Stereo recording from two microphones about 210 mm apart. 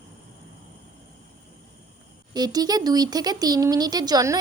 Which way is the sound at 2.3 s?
20° right (ahead or behind).